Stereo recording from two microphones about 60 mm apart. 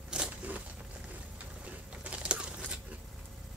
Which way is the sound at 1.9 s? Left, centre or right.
Centre.